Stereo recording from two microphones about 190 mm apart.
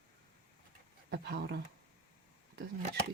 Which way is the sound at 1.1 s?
55° right (ahead or behind).